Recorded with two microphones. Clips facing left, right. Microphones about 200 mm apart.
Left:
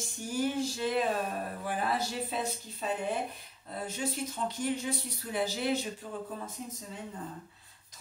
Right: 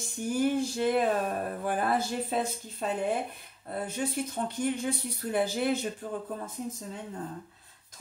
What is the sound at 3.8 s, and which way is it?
Speech, 55° right (ahead or behind).